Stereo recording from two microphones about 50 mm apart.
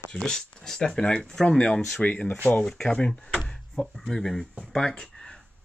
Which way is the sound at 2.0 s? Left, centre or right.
Left.